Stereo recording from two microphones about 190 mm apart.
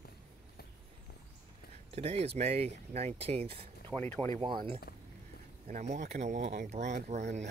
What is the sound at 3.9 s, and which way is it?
Speech, 10° left (ahead or behind).